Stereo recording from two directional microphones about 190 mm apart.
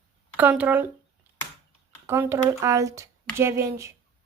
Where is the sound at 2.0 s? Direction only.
10° right (ahead or behind).